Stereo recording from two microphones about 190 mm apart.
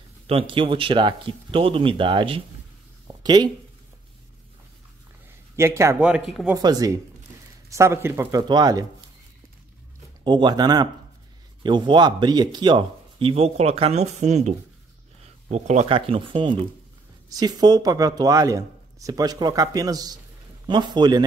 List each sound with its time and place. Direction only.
0.3 s speech: 30° right (ahead or behind)
3.1 s a sound: 20° right (ahead or behind)
5.6 s a man's voice: 15° right (ahead or behind)
6.0 s speech: 5° right (ahead or behind)
6.5 s speech: 20° right (ahead or behind)
10.2 s speech: 25° right (ahead or behind)